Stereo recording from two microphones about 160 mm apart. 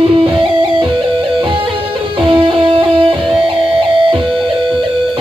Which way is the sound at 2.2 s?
30° right (ahead or behind).